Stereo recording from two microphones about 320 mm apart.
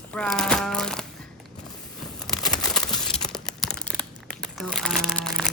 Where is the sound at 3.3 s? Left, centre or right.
Centre.